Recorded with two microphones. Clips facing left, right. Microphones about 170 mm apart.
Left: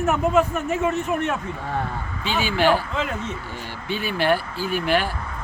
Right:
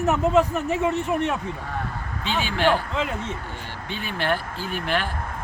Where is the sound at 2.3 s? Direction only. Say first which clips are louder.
Left 2 dB; 5° left (ahead or behind).